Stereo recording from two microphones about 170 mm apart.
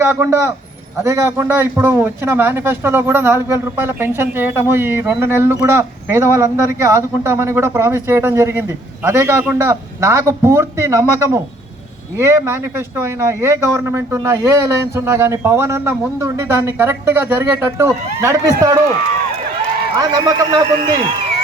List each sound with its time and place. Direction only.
0.0 s a man's voice: 15° right (ahead or behind)
20.0 s a man's voice: 20° right (ahead or behind)